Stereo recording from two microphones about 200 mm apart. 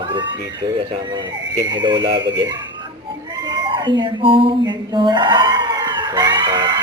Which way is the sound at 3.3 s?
20° right (ahead or behind).